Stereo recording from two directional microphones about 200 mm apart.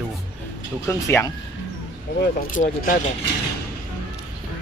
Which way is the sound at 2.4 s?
40° left (ahead or behind).